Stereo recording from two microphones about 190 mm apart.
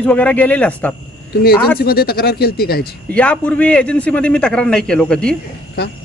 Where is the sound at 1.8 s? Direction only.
55° left (ahead or behind).